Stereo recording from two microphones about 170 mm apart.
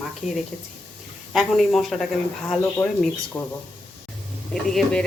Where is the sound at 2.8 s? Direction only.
20° left (ahead or behind).